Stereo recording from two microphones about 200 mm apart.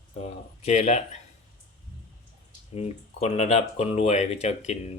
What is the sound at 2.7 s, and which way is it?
Speech, 30° left (ahead or behind).